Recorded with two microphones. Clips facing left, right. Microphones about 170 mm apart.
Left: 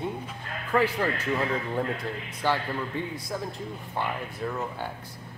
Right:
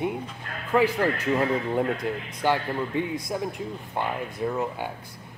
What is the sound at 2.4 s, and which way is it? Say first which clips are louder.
Speech: right 2 dB; 15° right (ahead or behind).